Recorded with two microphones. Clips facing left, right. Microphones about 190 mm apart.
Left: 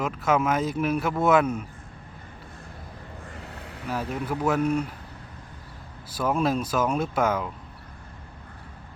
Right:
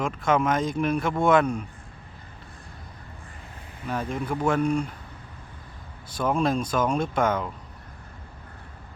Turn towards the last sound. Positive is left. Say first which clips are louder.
# even
turn(degrees=5)  # may be behind; listen again after turning